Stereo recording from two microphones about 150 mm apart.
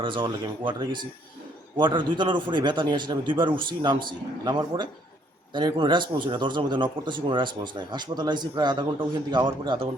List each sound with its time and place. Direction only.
0.0 s a man's voice: 35° right (ahead or behind)